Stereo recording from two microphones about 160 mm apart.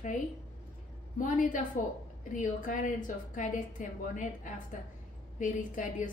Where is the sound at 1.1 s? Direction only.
55° left (ahead or behind).